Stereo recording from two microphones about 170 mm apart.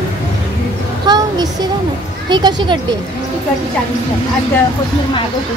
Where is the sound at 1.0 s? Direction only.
25° right (ahead or behind).